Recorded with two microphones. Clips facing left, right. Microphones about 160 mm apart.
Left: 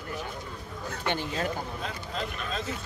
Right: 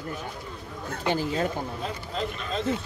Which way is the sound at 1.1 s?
35° right (ahead or behind).